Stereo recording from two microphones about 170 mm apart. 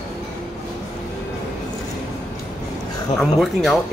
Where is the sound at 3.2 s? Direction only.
Centre (ahead or behind).